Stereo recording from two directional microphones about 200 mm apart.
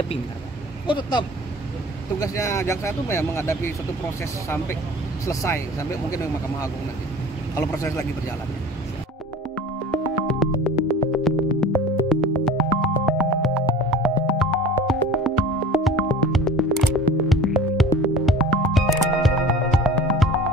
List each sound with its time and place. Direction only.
0.8 s speech: 25° left (ahead or behind)
5.2 s speech: 15° left (ahead or behind)
9.6 s music: 5° left (ahead or behind)